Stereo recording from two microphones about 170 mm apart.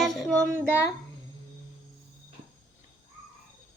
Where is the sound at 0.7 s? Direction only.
15° left (ahead or behind).